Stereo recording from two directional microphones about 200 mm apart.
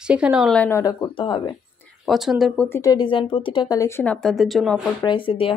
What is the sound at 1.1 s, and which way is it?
Speech, 25° left (ahead or behind).